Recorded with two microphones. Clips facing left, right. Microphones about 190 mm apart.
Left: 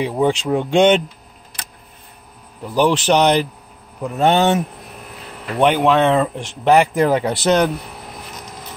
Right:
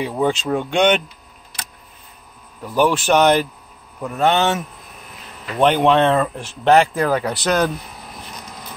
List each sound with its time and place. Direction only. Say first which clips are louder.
0.0 s speech: left 2 dB; 15° left (ahead or behind)
0.7 s a man's voice: left 4 dB; 25° left (ahead or behind)
2.6 s a man's voice: left 1 dB; 20° left (ahead or behind)
5.6 s speech: even; 10° left (ahead or behind)
6.1 s a man's voice: left 2 dB; 20° left (ahead or behind)
7.1 s a man's voice: left 3 dB; 25° left (ahead or behind)